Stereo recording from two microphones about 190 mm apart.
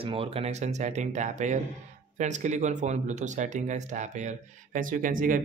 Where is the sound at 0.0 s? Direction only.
30° right (ahead or behind).